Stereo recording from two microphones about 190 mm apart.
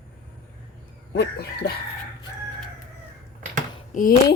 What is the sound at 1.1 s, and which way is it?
Speech, 65° left (ahead or behind).